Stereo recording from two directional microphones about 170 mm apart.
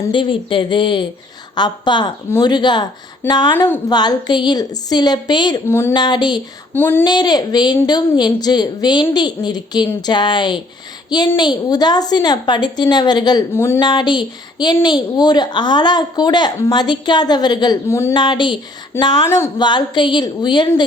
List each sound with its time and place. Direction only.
0.1 s speech: 30° left (ahead or behind)
3.5 s a woman's voice: 10° left (ahead or behind)
3.8 s speech: 25° left (ahead or behind)
5.6 s a woman's voice: 15° left (ahead or behind)
5.9 s speech: 25° left (ahead or behind)
6.7 s a woman's voice: 10° left (ahead or behind)
7.0 s speech: 25° left (ahead or behind)
13.5 s a woman's voice: 15° left (ahead or behind)
13.8 s speech: 25° left (ahead or behind)
18.1 s speech: 30° left (ahead or behind)